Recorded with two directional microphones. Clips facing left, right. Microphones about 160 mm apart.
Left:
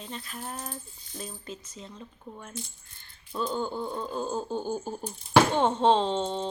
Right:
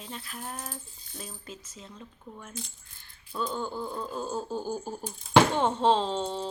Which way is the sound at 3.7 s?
25° left (ahead or behind).